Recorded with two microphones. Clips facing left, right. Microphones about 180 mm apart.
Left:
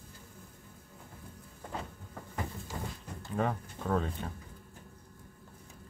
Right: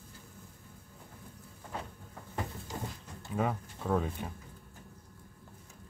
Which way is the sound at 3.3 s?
5° right (ahead or behind).